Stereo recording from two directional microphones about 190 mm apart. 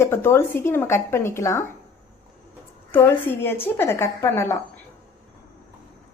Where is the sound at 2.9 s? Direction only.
10° left (ahead or behind).